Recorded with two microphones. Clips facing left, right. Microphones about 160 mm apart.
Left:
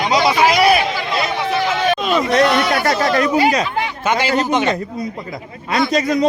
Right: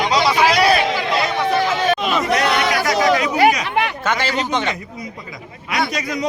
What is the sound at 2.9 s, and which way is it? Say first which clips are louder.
Speech: right 1 dB; 60° left (ahead or behind).